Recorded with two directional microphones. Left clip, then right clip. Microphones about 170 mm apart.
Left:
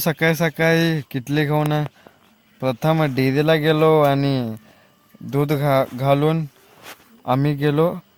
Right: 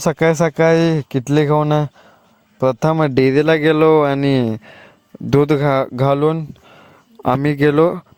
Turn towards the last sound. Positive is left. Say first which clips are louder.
# right 6 dB
turn(degrees=-65)  # may be behind; listen again after turning